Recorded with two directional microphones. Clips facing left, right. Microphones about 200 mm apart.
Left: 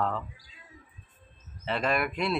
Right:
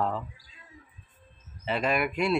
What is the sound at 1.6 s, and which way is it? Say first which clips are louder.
Speech: right 1 dB; 5° right (ahead or behind).